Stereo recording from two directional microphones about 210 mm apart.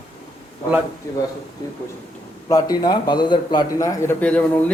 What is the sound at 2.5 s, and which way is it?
A man's voice, 15° left (ahead or behind).